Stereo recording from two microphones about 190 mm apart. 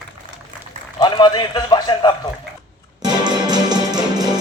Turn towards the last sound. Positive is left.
turn(degrees=-20)  # may be behind; listen again after turning